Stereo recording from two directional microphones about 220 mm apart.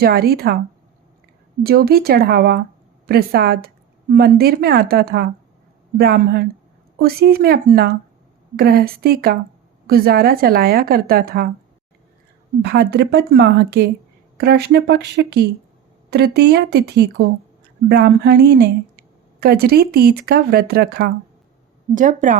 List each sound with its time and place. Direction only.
0.0 s a woman's voice: 45° right (ahead or behind)
1.6 s a woman's voice: 45° right (ahead or behind)
12.6 s a woman's voice: 45° right (ahead or behind)